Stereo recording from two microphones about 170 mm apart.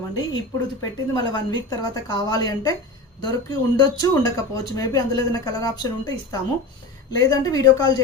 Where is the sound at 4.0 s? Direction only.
20° left (ahead or behind).